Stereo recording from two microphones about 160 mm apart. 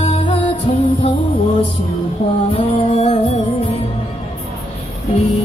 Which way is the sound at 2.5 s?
40° left (ahead or behind).